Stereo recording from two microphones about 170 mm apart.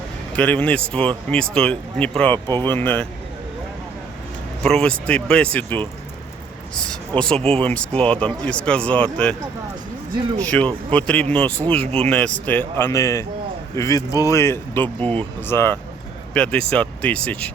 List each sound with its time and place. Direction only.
0.3 s speech: 10° left (ahead or behind)
4.6 s speech: 5° left (ahead or behind)
7.3 s speech: 35° right (ahead or behind)
7.6 s speech: 10° left (ahead or behind)
10.4 s speech: 5° left (ahead or behind)